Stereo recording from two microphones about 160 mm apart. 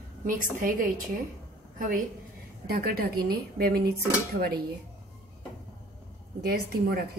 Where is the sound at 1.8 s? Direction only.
60° right (ahead or behind); by 3.8 s 75° right (ahead or behind).